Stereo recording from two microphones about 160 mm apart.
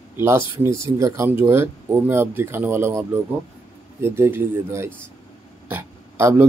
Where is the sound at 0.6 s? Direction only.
20° right (ahead or behind).